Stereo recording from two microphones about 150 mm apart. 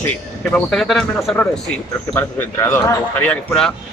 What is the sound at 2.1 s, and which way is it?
Speech, 15° left (ahead or behind).